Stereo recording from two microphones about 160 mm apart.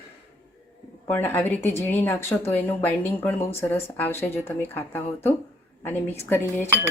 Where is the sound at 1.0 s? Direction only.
15° left (ahead or behind).